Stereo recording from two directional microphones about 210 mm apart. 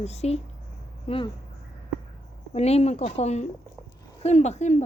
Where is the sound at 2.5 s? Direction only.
30° left (ahead or behind).